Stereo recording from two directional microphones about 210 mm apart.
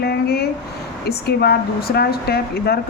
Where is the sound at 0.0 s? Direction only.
50° left (ahead or behind).